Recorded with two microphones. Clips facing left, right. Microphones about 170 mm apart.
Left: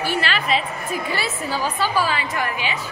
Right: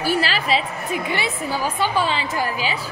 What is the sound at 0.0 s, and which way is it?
A woman's voice, 40° right (ahead or behind).